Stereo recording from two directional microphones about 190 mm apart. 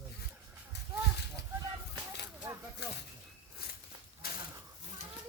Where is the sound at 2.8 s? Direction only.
60° left (ahead or behind).